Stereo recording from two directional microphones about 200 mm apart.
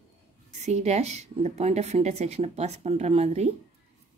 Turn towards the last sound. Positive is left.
turn(degrees=-30)  # may be behind; listen again after turning